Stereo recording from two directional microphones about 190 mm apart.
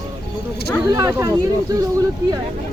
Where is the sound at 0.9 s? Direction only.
15° right (ahead or behind).